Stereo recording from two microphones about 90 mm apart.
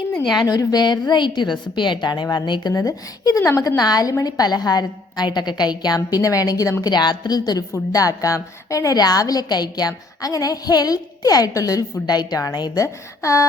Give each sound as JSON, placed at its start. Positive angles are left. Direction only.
{"t": 0.1, "sound": "a woman's voice", "side_deg": 5}
{"t": 0.4, "sound": "a woman's voice", "side_deg": 45}
{"t": 3.8, "sound": "a woman's voice", "side_deg": 45}
{"t": 6.8, "sound": "a woman's voice", "side_deg": 55}